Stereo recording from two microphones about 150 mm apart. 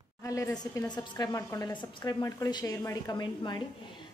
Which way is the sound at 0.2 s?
20° left (ahead or behind).